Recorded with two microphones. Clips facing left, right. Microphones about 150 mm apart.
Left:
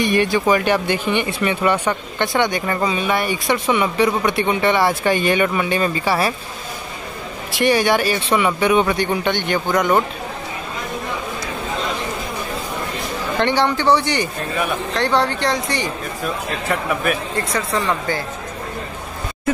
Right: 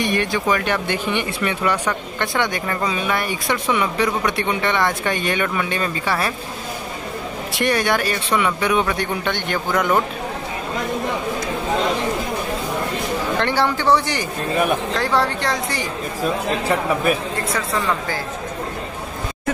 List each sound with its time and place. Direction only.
0.2 s speech: 5° left (ahead or behind)
7.5 s speech: centre (ahead or behind)
13.4 s speech: centre (ahead or behind)
16.6 s a man's voice: 30° right (ahead or behind)
17.6 s speech: centre (ahead or behind)